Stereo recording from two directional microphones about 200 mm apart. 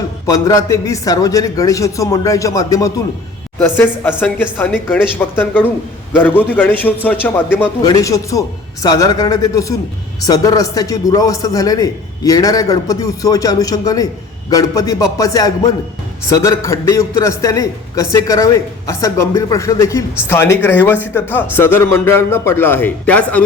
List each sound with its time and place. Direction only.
0.3 s a man's voice: 15° left (ahead or behind)